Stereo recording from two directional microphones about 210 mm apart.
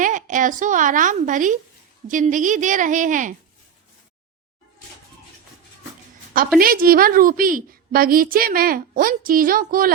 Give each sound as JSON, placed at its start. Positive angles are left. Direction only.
{"t": 0.0, "sound": "a woman's voice", "side_deg": -35}
{"t": 6.6, "sound": "a woman's voice", "side_deg": -45}